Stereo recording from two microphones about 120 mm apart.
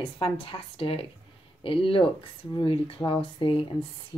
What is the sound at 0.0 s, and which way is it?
Speech, 50° left (ahead or behind).